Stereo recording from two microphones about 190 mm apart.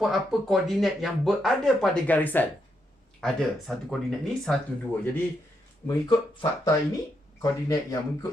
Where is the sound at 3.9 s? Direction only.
5° left (ahead or behind).